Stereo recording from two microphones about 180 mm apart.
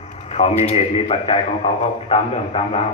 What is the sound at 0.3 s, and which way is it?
A man's voice, 35° left (ahead or behind).